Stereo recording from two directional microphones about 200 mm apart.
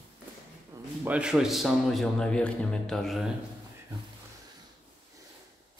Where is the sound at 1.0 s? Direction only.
5° right (ahead or behind).